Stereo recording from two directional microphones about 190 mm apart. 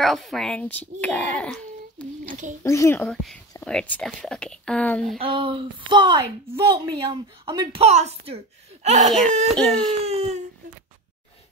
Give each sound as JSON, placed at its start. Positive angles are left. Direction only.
{"t": 0.0, "sound": "speech", "side_deg": 0}
{"t": 3.0, "sound": "speech", "side_deg": 0}
{"t": 5.2, "sound": "a woman's voice", "side_deg": -30}
{"t": 7.8, "sound": "a woman's voice", "side_deg": -35}